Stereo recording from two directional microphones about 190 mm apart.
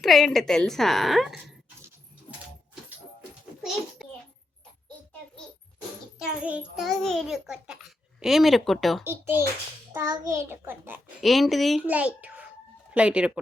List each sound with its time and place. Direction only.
0.0 s a child's voice: centre (ahead or behind)
3.2 s a sound: centre (ahead or behind)
6.4 s a child's voice: 5° right (ahead or behind)
9.0 s a child's voice: 10° right (ahead or behind)
11.2 s a child's voice: centre (ahead or behind)